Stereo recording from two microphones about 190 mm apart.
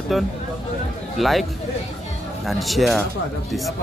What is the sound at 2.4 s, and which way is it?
Speech, centre (ahead or behind).